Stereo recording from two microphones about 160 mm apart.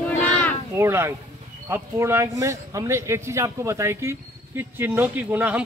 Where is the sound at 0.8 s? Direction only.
15° right (ahead or behind).